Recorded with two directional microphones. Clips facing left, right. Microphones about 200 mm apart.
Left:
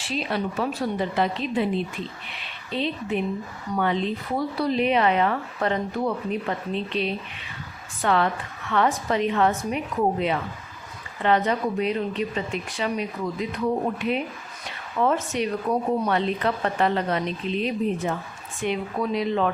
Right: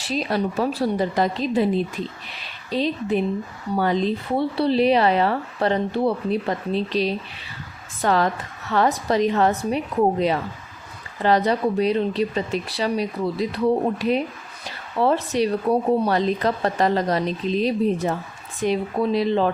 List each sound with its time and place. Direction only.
0.0 s speech: 40° right (ahead or behind)